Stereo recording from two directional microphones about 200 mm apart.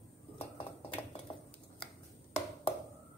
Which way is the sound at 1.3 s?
30° left (ahead or behind).